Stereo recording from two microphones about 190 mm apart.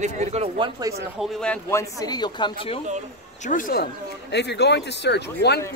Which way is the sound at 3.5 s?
45° left (ahead or behind).